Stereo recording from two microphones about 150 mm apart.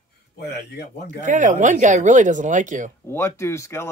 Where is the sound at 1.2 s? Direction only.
55° right (ahead or behind).